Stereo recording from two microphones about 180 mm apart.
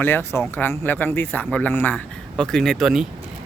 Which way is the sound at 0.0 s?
10° left (ahead or behind).